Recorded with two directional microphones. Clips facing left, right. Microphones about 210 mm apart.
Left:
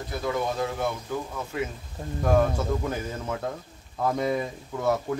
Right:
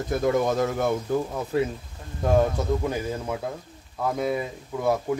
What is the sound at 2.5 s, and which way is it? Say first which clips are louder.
Speech: right 2 dB; 15° right (ahead or behind).